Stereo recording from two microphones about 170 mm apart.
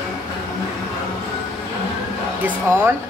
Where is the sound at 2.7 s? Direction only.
15° right (ahead or behind).